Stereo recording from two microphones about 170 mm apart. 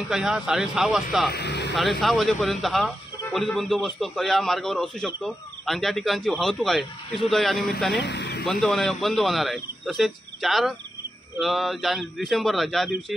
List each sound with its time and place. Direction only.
0.1 s a man's voice: 5° right (ahead or behind)
1.3 s speech: 80° left
1.8 s a man's voice: centre (ahead or behind)
8.0 s vehicle: 85° left
8.5 s a man's voice: centre (ahead or behind)